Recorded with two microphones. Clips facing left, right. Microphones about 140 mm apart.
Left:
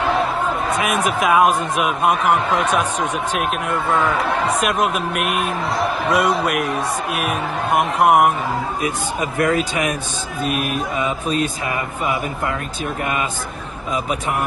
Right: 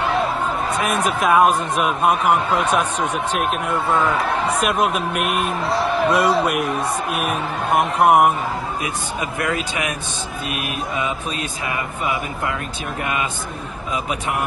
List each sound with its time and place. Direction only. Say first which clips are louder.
0.8 s a man's voice: even; 10° left (ahead or behind)
3.9 s a man's voice: left 1 dB; centre (ahead or behind)
8.8 s speech: left 3 dB; 35° left (ahead or behind)